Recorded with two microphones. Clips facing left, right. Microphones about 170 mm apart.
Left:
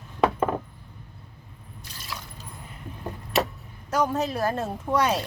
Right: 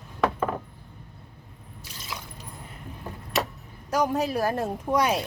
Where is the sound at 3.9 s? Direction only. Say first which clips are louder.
Even; 10° right (ahead or behind).